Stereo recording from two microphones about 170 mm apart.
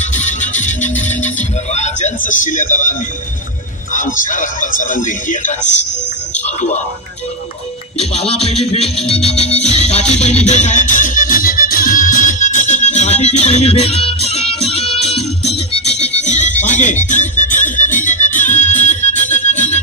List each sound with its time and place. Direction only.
0.1 s music: 45° left (ahead or behind)
3.9 s speech: 50° left (ahead or behind)
7.9 s music: 35° left (ahead or behind)